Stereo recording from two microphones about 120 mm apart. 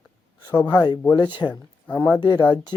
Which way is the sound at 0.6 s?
35° left (ahead or behind).